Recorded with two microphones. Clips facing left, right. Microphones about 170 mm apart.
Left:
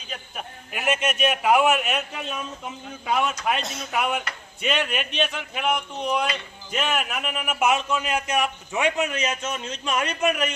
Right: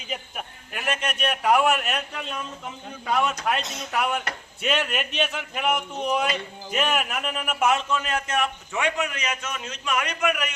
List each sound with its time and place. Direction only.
0.3 s a man's voice: 5° left (ahead or behind); by 10.5 s 30° left (ahead or behind)